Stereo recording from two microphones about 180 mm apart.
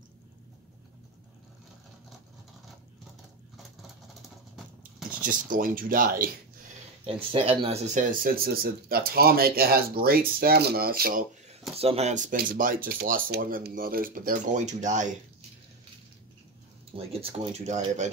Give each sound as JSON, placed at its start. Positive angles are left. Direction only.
{"t": 5.2, "sound": "speech", "side_deg": -50}
{"t": 7.3, "sound": "speech", "side_deg": -30}
{"t": 11.7, "sound": "speech", "side_deg": -35}
{"t": 16.9, "sound": "speech", "side_deg": -35}